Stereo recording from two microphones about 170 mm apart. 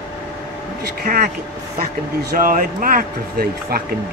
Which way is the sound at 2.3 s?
55° right (ahead or behind).